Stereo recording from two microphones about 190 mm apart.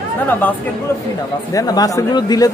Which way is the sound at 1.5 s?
20° left (ahead or behind).